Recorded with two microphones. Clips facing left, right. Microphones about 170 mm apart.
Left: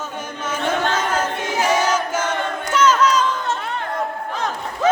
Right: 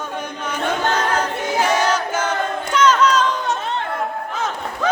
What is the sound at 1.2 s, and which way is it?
Choir, 10° left (ahead or behind).